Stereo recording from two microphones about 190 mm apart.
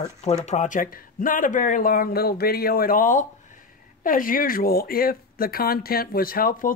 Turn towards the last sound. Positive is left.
turn(degrees=50)  # may be behind; listen again after turning